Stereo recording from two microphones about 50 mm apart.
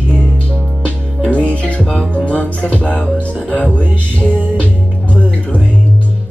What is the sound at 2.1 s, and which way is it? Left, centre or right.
Speech, left.